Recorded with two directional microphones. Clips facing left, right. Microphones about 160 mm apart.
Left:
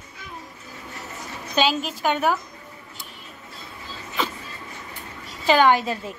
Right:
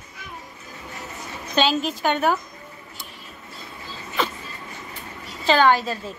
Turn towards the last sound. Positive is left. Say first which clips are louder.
# even
turn(degrees=20)  # may be behind; listen again after turning